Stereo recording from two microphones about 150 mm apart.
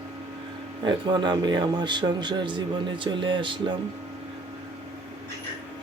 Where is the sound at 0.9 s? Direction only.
30° right (ahead or behind).